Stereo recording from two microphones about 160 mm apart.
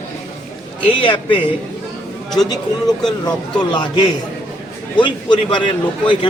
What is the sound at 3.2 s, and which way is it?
Speech, 30° left (ahead or behind).